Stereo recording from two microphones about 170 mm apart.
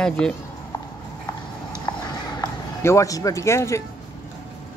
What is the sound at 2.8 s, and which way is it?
Speech, 15° left (ahead or behind).